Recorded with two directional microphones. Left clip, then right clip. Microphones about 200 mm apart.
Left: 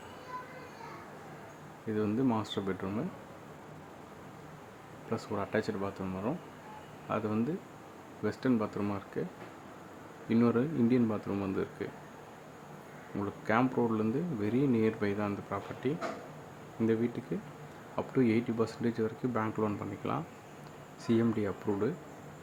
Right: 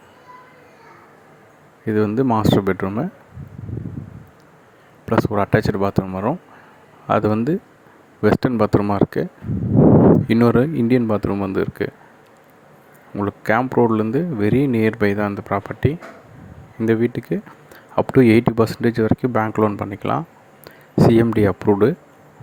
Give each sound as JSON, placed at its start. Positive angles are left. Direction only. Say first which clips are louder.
{"t": 1.9, "sound": "speech", "louder": "right 14 dB", "side_deg": -40}
{"t": 5.0, "sound": "speech", "louder": "right 18 dB", "side_deg": -45}
{"t": 10.3, "sound": "speech", "louder": "right 13 dB", "side_deg": -45}
{"t": 13.2, "sound": "speech", "louder": "right 12 dB", "side_deg": -40}